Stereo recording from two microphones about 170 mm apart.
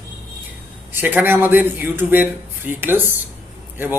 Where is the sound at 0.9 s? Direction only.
10° right (ahead or behind).